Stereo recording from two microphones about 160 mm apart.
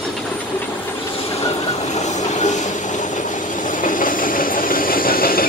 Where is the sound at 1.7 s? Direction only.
45° left (ahead or behind).